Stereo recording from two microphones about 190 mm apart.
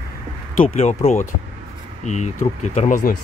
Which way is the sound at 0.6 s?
40° left (ahead or behind).